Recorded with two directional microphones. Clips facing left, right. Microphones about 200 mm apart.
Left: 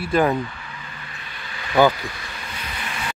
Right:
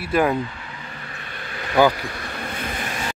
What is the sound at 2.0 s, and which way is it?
Vehicle, 55° right (ahead or behind).